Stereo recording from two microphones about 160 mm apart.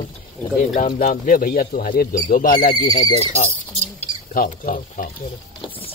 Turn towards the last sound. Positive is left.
turn(degrees=60)  # may be behind; listen again after turning